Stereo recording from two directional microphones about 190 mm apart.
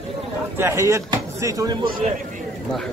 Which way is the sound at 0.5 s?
15° right (ahead or behind).